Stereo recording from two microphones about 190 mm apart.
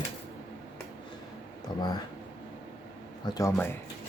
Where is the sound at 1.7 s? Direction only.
25° left (ahead or behind).